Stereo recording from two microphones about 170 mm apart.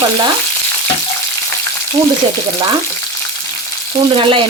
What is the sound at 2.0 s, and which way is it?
Speech, 25° right (ahead or behind).